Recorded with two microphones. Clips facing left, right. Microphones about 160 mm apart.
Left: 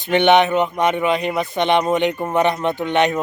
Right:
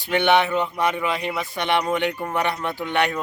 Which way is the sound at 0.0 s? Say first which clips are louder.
Left 5 dB; 20° left (ahead or behind).